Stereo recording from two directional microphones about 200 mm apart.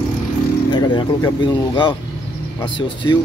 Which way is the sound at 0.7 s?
25° left (ahead or behind).